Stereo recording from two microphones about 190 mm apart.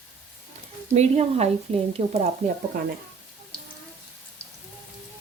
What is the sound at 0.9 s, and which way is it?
Speech, 35° right (ahead or behind).